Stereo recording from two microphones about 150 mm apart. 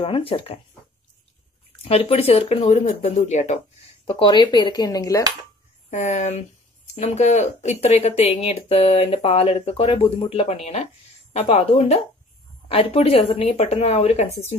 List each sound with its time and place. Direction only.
0.0 s speech: 40° left (ahead or behind)
1.8 s speech: 40° left (ahead or behind)
4.1 s speech: 30° left (ahead or behind)
5.9 s speech: 50° left (ahead or behind)